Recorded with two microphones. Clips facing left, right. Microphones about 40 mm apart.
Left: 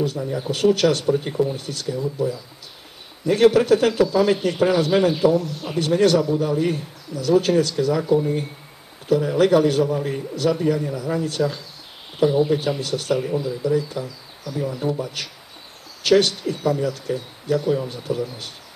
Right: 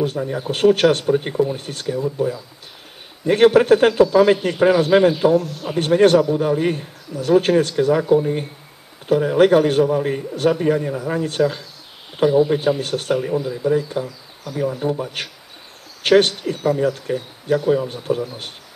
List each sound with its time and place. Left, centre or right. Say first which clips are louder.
0.0 s a man's voice: right 2 dB; right